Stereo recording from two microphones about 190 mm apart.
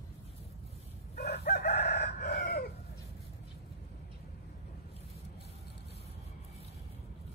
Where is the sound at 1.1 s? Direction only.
55° left (ahead or behind).